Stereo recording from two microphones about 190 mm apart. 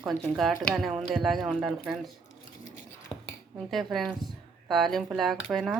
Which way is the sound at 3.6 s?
Centre (ahead or behind).